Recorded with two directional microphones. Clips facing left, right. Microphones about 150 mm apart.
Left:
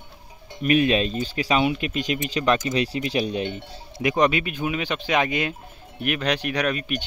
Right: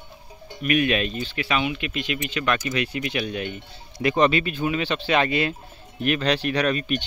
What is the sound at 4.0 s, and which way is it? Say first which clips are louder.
Speech: right 1 dB; 15° left (ahead or behind).